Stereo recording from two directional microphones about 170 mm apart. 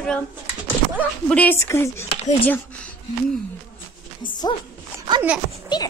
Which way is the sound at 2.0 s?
40° left (ahead or behind).